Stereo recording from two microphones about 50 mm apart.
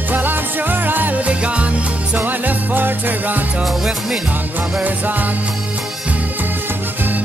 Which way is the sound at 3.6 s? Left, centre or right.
Centre.